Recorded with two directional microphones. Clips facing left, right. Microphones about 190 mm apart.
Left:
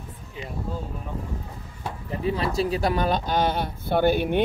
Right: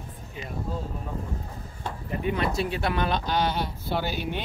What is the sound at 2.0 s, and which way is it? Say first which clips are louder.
Speech: left 1 dB; 30° left (ahead or behind).